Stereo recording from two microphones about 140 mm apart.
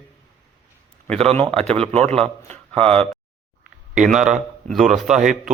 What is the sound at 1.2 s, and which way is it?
A man's voice, 45° right (ahead or behind).